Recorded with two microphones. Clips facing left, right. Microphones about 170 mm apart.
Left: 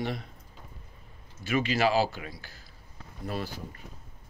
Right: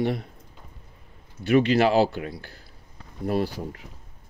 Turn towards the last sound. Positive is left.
turn(degrees=-70)  # may be behind; listen again after turning